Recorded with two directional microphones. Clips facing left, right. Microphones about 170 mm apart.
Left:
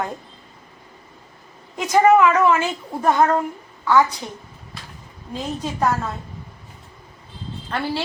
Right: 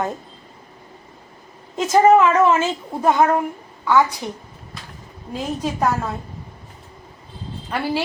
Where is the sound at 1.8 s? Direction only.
25° right (ahead or behind).